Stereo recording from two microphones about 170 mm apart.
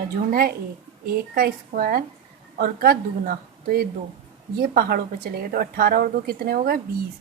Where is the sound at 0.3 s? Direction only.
60° right (ahead or behind).